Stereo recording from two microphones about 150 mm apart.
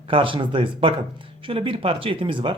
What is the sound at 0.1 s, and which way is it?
Speech, 35° right (ahead or behind).